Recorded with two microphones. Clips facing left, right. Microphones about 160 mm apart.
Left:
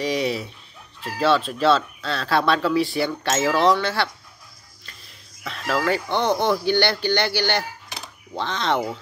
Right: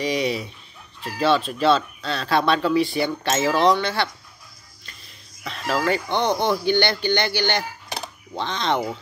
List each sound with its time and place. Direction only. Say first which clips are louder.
0.0 s speech: even; 5° left (ahead or behind)
5.4 s speech: even; centre (ahead or behind)